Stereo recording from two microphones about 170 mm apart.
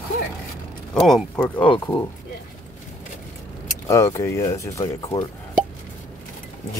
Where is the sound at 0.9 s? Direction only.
Centre (ahead or behind).